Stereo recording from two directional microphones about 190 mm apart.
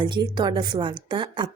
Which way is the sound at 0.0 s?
25° right (ahead or behind).